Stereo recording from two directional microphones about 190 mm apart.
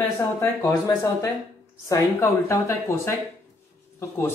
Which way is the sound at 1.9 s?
15° left (ahead or behind).